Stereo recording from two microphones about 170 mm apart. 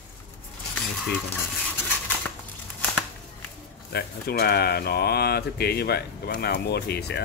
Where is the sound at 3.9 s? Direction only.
65° left (ahead or behind).